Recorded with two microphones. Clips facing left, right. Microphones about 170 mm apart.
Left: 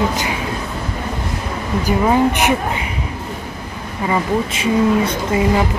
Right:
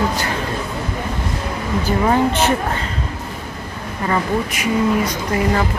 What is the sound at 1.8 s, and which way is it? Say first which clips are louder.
Speech: left 2 dB; 15° left (ahead or behind).